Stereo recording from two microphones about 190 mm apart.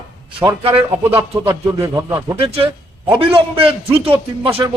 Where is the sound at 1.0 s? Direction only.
10° right (ahead or behind).